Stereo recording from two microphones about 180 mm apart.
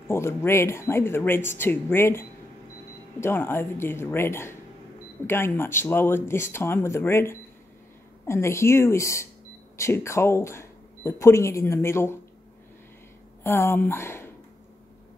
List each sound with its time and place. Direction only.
0.1 s speech: 15° left (ahead or behind)
13.4 s speech: 15° left (ahead or behind)